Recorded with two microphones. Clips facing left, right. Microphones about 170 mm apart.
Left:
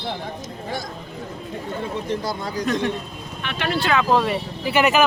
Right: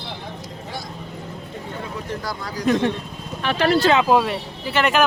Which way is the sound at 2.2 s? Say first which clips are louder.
Left 3 dB; 25° left (ahead or behind).